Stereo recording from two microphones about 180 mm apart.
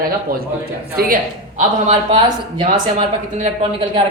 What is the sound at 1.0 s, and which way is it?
Speech, 60° right (ahead or behind).